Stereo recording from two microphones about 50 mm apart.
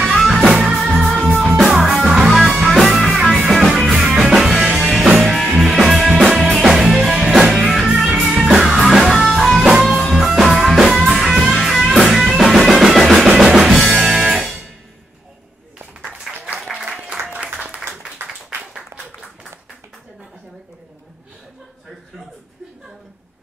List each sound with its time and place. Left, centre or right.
0.0 s music: centre
16.5 s applause: centre
16.9 s applause: centre
17.3 s applause: right
17.7 s a sound: centre
18.9 s applause: centre